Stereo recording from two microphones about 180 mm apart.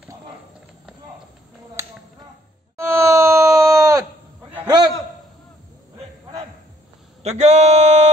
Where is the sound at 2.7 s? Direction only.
15° right (ahead or behind).